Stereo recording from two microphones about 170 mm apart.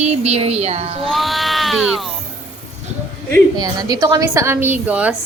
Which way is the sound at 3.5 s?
20° right (ahead or behind).